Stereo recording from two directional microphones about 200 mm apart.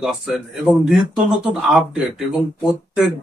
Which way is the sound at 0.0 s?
Centre (ahead or behind).